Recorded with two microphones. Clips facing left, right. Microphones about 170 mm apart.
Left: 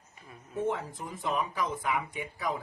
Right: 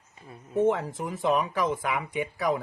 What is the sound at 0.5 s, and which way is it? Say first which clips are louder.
Speech: right 8 dB; 80° right.